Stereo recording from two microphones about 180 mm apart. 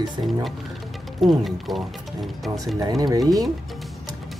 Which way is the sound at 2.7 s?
20° right (ahead or behind).